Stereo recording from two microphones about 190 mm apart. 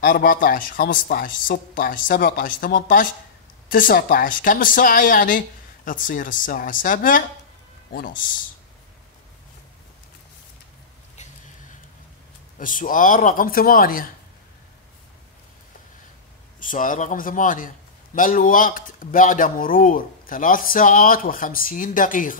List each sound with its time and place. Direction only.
0.0 s a man's voice: 45° left (ahead or behind)
12.5 s a man's voice: 45° left (ahead or behind)
16.5 s a man's voice: 45° left (ahead or behind)